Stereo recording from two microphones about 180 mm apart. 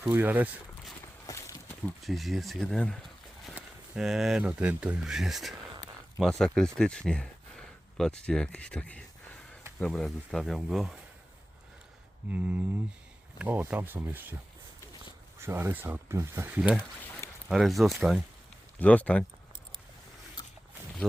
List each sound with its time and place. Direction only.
0.0 s speech: 10° right (ahead or behind)
1.3 s a sound: 15° left (ahead or behind)
2.0 s speech: centre (ahead or behind)
12.3 s speech: 10° right (ahead or behind)
15.4 s speech: 15° right (ahead or behind); by 19.2 s 5° left (ahead or behind)
21.0 s speech: centre (ahead or behind)